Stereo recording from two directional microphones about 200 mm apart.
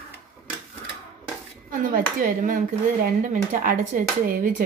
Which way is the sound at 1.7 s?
45° right (ahead or behind).